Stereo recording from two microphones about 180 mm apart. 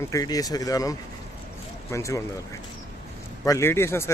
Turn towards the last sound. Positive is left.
turn(degrees=15)  # may be behind; listen again after turning